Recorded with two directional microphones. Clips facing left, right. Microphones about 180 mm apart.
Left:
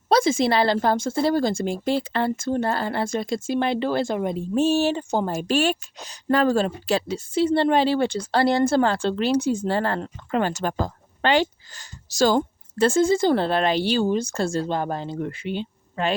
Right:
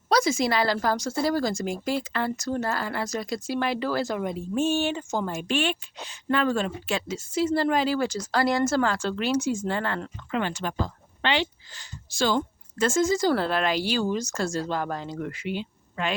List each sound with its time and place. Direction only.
0.1 s a woman's voice: 30° left (ahead or behind)